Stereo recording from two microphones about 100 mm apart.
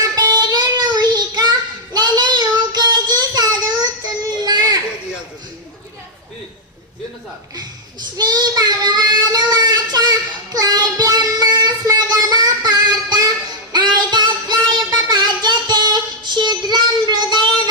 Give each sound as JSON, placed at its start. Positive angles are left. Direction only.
{"t": 0.2, "sound": "child singing", "side_deg": -40}
{"t": 8.2, "sound": "child singing", "side_deg": -40}
{"t": 13.7, "sound": "music", "side_deg": -45}
{"t": 14.9, "sound": "child singing", "side_deg": -45}